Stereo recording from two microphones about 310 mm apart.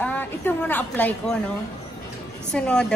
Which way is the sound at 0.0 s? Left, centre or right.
Centre.